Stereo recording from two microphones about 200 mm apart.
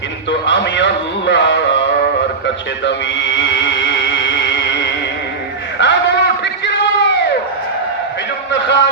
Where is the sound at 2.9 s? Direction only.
65° left (ahead or behind).